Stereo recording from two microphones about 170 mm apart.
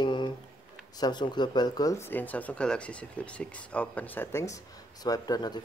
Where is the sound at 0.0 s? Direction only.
30° left (ahead or behind).